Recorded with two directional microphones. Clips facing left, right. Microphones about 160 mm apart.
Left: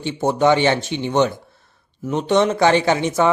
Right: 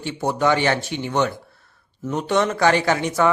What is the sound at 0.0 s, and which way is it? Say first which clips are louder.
Speech: left 4 dB; 20° left (ahead or behind).